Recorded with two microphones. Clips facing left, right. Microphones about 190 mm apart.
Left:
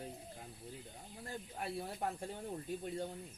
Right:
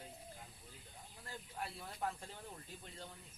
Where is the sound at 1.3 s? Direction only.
55° left (ahead or behind).